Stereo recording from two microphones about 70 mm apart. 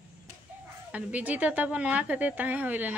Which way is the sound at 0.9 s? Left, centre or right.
Right.